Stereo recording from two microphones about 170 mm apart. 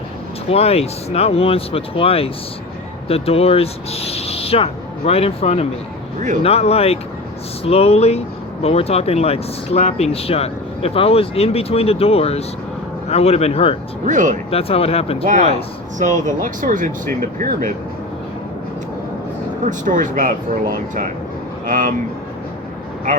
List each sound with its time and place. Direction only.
0.5 s speech: 35° left (ahead or behind)
14.0 s speech: 50° right (ahead or behind)
14.5 s speech: 35° left (ahead or behind)
16.0 s speech: 45° right (ahead or behind)
19.6 s speech: 50° right (ahead or behind)
21.7 s speech: 50° right (ahead or behind)